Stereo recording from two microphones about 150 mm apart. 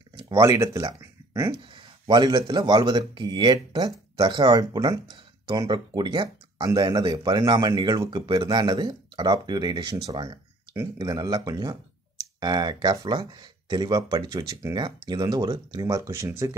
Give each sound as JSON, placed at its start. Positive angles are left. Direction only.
{"t": 0.3, "sound": "speech", "side_deg": -20}
{"t": 1.7, "sound": "speech", "side_deg": -30}